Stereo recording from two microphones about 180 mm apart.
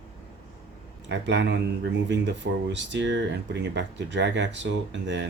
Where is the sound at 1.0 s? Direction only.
75° right (ahead or behind).